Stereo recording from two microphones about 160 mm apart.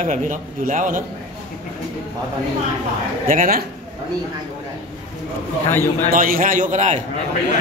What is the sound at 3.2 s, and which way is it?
Speech, 60° right (ahead or behind).